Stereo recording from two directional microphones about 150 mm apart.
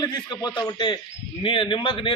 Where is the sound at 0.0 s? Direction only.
30° left (ahead or behind).